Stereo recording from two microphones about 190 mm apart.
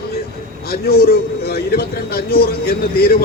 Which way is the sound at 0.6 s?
55° left (ahead or behind).